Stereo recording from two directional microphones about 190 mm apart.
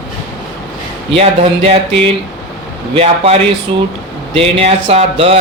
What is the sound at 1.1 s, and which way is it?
Speech, 30° right (ahead or behind).